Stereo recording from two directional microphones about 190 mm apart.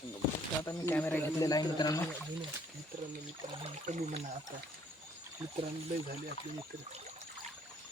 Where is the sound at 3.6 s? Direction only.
35° right (ahead or behind).